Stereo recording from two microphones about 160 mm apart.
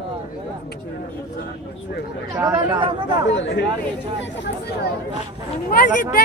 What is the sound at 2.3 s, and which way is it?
Speech, 25° right (ahead or behind).